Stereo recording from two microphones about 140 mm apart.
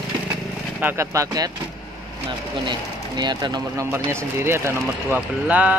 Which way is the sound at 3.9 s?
15° right (ahead or behind).